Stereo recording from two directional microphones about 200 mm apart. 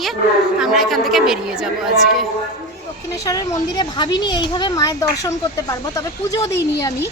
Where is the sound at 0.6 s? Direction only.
Centre (ahead or behind).